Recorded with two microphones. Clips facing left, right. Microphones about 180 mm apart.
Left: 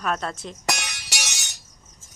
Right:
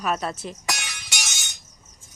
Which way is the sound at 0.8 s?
40° left (ahead or behind).